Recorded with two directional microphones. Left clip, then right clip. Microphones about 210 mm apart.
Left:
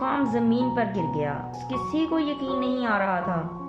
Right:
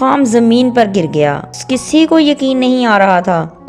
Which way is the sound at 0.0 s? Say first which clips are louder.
Right 14 dB; 40° right (ahead or behind).